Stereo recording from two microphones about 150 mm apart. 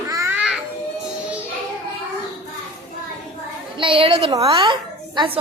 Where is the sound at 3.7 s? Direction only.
35° right (ahead or behind).